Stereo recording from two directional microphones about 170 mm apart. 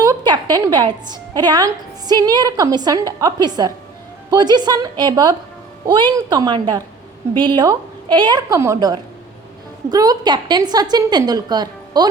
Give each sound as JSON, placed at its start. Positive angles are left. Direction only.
{"t": 0.0, "sound": "a woman's voice", "side_deg": -20}